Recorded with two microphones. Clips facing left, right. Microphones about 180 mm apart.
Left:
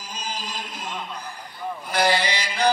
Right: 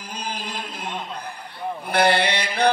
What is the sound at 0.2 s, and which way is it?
Chant, 55° right (ahead or behind).